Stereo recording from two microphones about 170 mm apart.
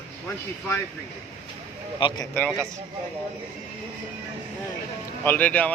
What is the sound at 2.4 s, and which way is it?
Speech, 5° left (ahead or behind).